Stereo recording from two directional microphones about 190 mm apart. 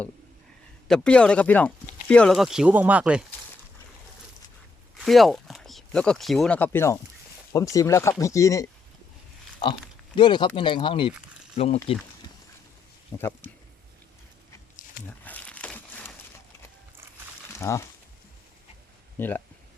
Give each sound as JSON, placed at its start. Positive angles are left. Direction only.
{"t": 0.9, "sound": "speech", "side_deg": 5}
{"t": 4.9, "sound": "speech", "side_deg": 0}
{"t": 10.2, "sound": "speech", "side_deg": 25}
{"t": 13.1, "sound": "speech", "side_deg": 10}
{"t": 15.0, "sound": "crumpling", "side_deg": 10}
{"t": 17.6, "sound": "speech", "side_deg": 15}
{"t": 19.2, "sound": "speech", "side_deg": 10}